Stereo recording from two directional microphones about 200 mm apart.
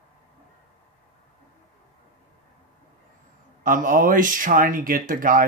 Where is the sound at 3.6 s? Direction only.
40° right (ahead or behind).